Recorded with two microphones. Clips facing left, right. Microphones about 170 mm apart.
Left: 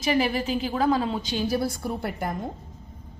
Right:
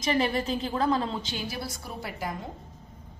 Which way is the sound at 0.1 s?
10° left (ahead or behind).